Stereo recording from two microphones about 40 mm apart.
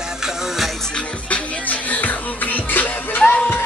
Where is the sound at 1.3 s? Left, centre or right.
Left.